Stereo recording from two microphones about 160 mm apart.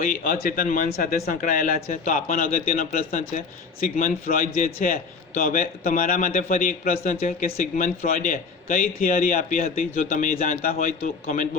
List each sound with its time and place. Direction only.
0.0 s a man's voice: 55° left (ahead or behind)
7.2 s a man's voice: 50° left (ahead or behind)